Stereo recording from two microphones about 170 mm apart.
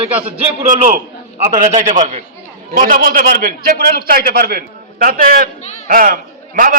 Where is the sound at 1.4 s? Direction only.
45° right (ahead or behind).